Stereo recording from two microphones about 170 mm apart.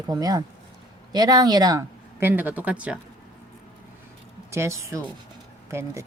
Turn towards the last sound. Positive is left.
turn(degrees=-15)  # may be behind; listen again after turning